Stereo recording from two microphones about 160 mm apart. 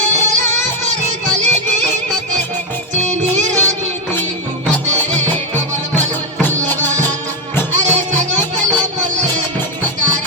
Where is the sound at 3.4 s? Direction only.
45° right (ahead or behind).